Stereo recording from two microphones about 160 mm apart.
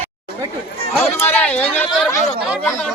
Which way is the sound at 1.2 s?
10° left (ahead or behind).